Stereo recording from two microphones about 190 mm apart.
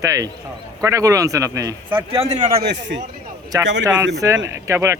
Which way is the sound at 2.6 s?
70° right (ahead or behind).